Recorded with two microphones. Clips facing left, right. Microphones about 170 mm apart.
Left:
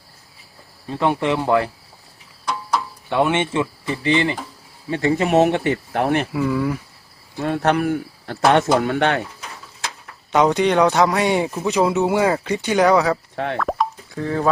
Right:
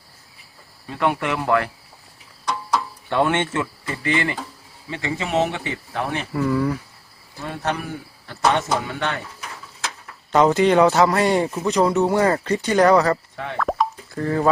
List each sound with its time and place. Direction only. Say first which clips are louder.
0.9 s speech: left 3 dB; 30° left (ahead or behind)
3.1 s speech: left 1 dB; 15° left (ahead or behind)
4.9 s speech: left 7 dB; 45° left (ahead or behind)
6.3 s a man's voice: even; 5° left (ahead or behind)
7.3 s speech: left 7 dB; 60° left (ahead or behind)
10.3 s a man's voice: right 1 dB; centre (ahead or behind)
13.3 s speech: left 6 dB; 65° left (ahead or behind)
13.6 s plop: even; centre (ahead or behind)